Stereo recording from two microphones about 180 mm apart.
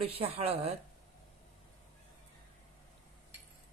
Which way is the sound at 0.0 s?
35° right (ahead or behind).